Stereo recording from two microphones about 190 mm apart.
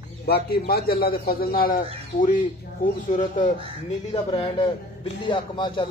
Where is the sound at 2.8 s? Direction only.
45° left (ahead or behind).